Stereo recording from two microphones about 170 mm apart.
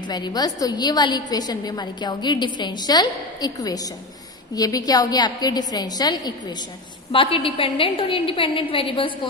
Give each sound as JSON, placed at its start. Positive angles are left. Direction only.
{"t": 0.1, "sound": "a woman's voice", "side_deg": 25}